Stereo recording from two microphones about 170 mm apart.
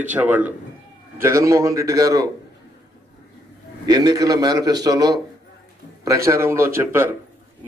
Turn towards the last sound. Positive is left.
turn(degrees=-15)  # may be behind; listen again after turning